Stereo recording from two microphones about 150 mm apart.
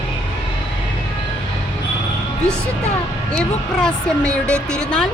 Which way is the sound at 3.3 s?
5° left (ahead or behind).